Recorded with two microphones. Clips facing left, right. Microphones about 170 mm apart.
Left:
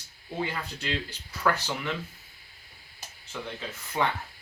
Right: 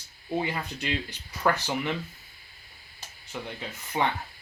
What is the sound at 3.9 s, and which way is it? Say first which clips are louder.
Speech: right 1 dB; 15° right (ahead or behind).